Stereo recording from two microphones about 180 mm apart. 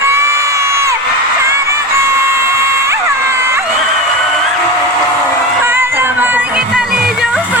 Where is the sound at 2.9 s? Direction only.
15° right (ahead or behind).